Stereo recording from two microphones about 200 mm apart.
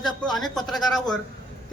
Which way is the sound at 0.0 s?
Centre (ahead or behind).